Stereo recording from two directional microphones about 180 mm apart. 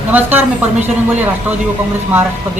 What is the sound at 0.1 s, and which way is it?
Speech, 10° right (ahead or behind).